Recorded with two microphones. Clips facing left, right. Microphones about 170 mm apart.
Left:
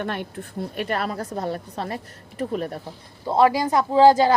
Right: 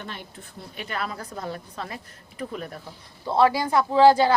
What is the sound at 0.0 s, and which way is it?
Speech, 60° left (ahead or behind).